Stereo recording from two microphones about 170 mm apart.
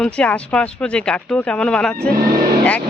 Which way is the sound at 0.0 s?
5° left (ahead or behind).